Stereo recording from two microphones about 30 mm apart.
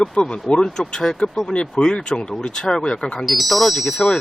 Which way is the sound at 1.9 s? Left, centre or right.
Left.